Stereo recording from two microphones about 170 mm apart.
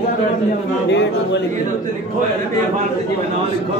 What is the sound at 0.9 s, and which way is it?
Speech, 90° left.